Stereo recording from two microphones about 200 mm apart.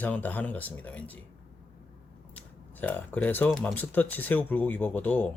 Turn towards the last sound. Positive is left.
turn(degrees=10)  # may be behind; listen again after turning